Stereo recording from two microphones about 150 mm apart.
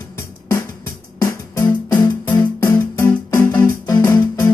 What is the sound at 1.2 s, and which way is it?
Music, 25° left (ahead or behind).